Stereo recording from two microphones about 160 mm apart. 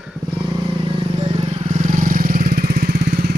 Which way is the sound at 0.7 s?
30° right (ahead or behind).